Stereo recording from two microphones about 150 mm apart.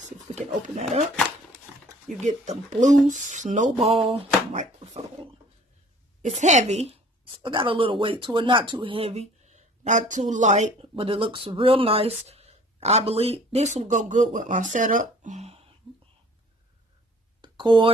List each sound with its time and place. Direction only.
0.3 s speech: 50° right (ahead or behind)
2.1 s speech: 50° right (ahead or behind)
6.2 s speech: 50° right (ahead or behind)
7.4 s speech: 35° right (ahead or behind)
17.4 s a sound: 30° right (ahead or behind)